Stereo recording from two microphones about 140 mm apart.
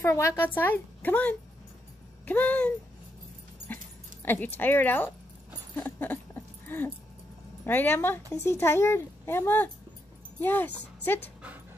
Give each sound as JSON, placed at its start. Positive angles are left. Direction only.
{"t": 0.0, "sound": "speech", "side_deg": 20}
{"t": 3.6, "sound": "dog", "side_deg": 15}
{"t": 5.8, "sound": "a sound", "side_deg": 15}
{"t": 7.6, "sound": "speech", "side_deg": 15}